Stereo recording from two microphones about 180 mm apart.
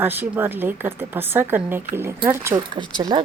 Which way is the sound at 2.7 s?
25° right (ahead or behind).